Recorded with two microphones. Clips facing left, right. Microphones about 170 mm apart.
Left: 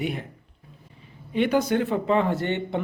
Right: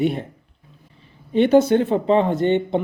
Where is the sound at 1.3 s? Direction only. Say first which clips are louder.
Right 7 dB; 25° right (ahead or behind).